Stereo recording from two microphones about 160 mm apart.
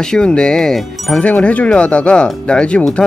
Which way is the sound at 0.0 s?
5° left (ahead or behind).